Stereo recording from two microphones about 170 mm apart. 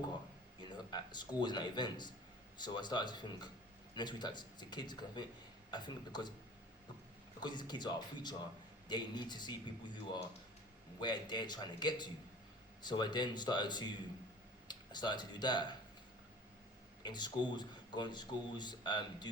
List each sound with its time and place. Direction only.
0.7 s a man's voice: 25° left (ahead or behind)
7.3 s speech: 25° left (ahead or behind)
11.0 s speech: 25° left (ahead or behind)
17.0 s speech: 25° left (ahead or behind)